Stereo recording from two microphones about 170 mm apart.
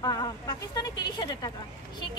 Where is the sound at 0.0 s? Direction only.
25° left (ahead or behind).